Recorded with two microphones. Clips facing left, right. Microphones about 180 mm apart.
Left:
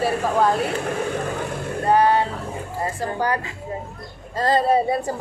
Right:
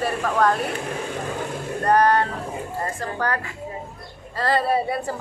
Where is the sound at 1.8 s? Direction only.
5° left (ahead or behind).